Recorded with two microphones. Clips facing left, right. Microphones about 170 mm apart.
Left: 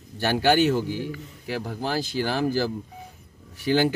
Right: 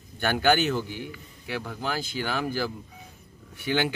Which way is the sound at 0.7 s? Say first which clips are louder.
Left 5 dB; 35° left (ahead or behind).